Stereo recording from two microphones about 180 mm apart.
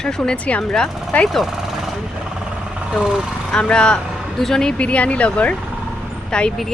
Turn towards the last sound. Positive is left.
turn(degrees=5)  # may be behind; listen again after turning